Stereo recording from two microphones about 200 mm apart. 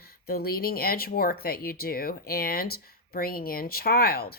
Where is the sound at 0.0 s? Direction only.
50° left (ahead or behind).